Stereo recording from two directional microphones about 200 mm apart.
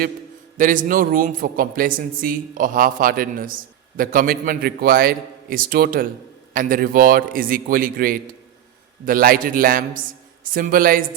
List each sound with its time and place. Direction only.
0.5 s a man's voice: 40° right (ahead or behind)